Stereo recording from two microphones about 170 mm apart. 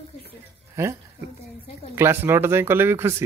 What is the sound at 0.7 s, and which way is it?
Speech, 15° right (ahead or behind).